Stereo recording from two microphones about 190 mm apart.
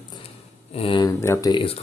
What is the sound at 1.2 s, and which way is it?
Speech, 15° left (ahead or behind).